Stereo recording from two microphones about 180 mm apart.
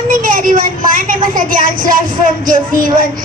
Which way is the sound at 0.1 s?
50° right (ahead or behind).